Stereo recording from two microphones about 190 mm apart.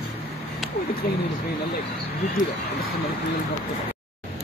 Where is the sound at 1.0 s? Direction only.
50° left (ahead or behind).